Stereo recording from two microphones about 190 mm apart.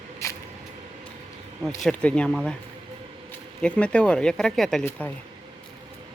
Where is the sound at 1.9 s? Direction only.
5° left (ahead or behind).